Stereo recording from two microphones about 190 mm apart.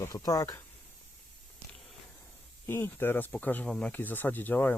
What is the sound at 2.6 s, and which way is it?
Speech, 10° left (ahead or behind).